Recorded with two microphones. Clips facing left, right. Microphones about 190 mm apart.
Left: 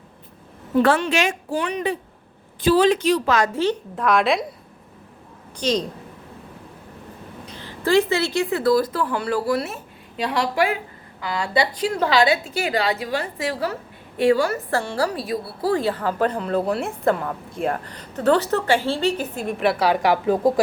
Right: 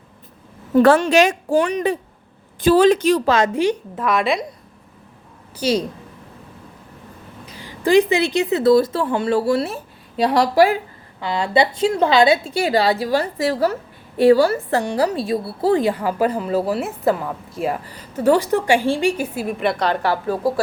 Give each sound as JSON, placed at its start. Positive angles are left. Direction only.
{"t": 0.8, "sound": "speech", "side_deg": -45}
{"t": 3.2, "sound": "a woman's voice", "side_deg": -25}
{"t": 3.9, "sound": "a woman's voice", "side_deg": 0}
{"t": 5.5, "sound": "a woman's voice", "side_deg": -10}
{"t": 7.5, "sound": "speech", "side_deg": -10}
{"t": 11.2, "sound": "a woman's voice", "side_deg": -25}
{"t": 14.7, "sound": "a woman's voice", "side_deg": -20}